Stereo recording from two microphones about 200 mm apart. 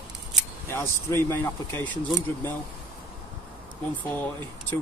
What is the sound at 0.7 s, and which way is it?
Speech, 10° left (ahead or behind).